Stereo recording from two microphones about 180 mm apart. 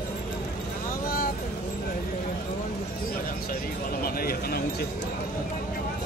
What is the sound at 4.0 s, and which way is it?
Speech, 55° left (ahead or behind).